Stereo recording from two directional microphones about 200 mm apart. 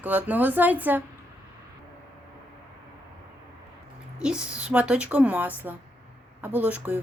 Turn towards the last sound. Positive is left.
turn(degrees=-10)  # may be behind; listen again after turning